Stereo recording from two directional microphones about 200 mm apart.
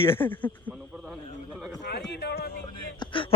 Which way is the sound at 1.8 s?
60° left (ahead or behind).